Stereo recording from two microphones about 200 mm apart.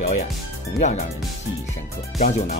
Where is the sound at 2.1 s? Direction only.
40° left (ahead or behind).